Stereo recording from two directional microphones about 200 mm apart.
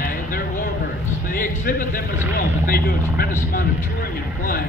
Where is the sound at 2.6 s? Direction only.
45° left (ahead or behind).